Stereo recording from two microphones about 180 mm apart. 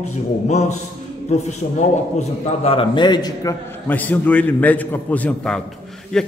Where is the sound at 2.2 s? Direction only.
30° left (ahead or behind).